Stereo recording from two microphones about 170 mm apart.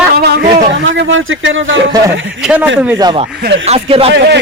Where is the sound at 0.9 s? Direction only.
90° right.